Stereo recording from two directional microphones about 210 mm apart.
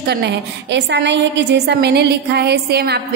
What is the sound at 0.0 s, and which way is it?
A woman's voice, 50° right (ahead or behind).